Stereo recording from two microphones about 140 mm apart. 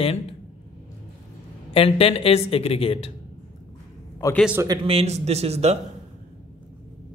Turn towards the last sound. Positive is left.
turn(degrees=-50)  # may be behind; listen again after turning